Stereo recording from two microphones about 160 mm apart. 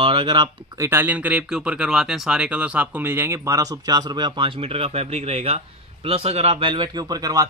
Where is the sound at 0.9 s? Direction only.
10° right (ahead or behind).